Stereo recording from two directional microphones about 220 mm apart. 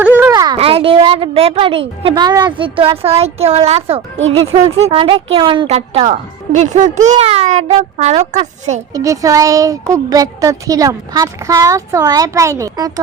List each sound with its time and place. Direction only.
0.0 s a sound: 10° right (ahead or behind)
0.5 s a woman's voice: 25° right (ahead or behind)
8.9 s a woman's voice: 15° right (ahead or behind)